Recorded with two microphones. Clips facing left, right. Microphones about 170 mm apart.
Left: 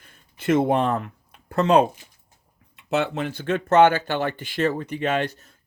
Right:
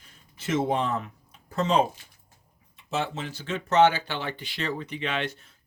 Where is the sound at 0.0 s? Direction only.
55° left (ahead or behind).